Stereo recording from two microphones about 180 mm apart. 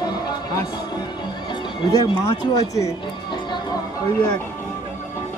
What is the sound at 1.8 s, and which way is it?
Speech, 25° left (ahead or behind).